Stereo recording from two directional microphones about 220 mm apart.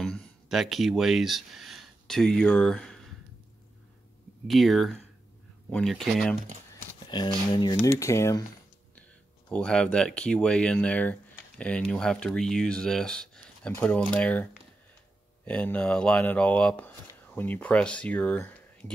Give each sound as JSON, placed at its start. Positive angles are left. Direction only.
{"t": 0.0, "sound": "speech", "side_deg": 5}
{"t": 4.5, "sound": "speech", "side_deg": 0}
{"t": 7.1, "sound": "speech", "side_deg": 20}
{"t": 9.5, "sound": "speech", "side_deg": 5}